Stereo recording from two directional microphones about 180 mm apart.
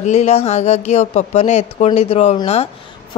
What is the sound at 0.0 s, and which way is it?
A woman's voice, 40° left (ahead or behind).